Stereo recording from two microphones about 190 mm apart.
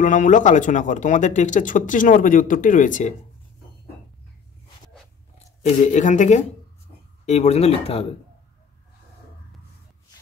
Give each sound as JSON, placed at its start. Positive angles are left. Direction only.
{"t": 0.0, "sound": "speech", "side_deg": 40}
{"t": 5.6, "sound": "speech", "side_deg": 40}